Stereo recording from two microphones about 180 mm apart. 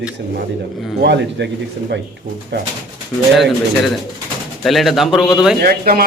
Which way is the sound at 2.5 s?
70° right (ahead or behind).